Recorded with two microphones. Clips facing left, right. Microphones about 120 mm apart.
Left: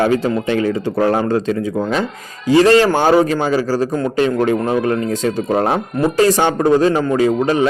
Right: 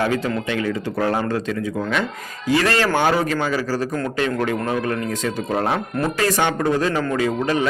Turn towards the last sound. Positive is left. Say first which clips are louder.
# left 6 dB
turn(degrees=30)  # may be behind; listen again after turning